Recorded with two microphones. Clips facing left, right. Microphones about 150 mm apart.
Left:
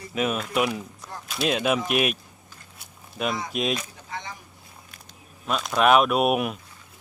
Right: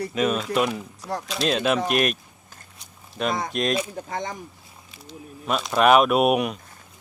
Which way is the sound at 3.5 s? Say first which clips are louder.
Right 2 dB; 5° left (ahead or behind).